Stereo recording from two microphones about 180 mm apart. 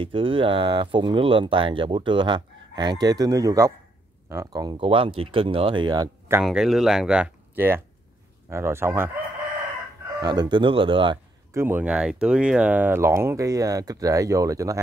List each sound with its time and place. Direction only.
0.0 s speech: 30° right (ahead or behind)
6.4 s speech: 5° right (ahead or behind)
10.2 s speech: 25° right (ahead or behind)
11.5 s speech: 10° right (ahead or behind)